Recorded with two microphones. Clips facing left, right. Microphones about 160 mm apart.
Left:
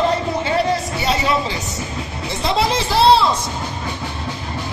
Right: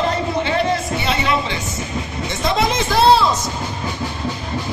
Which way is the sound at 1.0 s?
35° left (ahead or behind).